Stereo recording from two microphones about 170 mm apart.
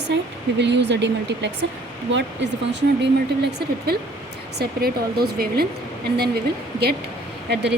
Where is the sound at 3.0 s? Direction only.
75° right (ahead or behind).